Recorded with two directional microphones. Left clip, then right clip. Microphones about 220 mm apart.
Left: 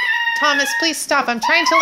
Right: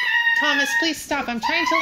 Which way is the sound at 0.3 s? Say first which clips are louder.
Left 2 dB; 30° left (ahead or behind).